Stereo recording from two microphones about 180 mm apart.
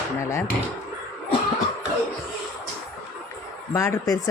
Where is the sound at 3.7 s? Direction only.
15° left (ahead or behind).